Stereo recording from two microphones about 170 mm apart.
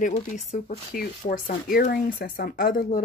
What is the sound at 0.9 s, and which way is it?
Speech, 60° left (ahead or behind).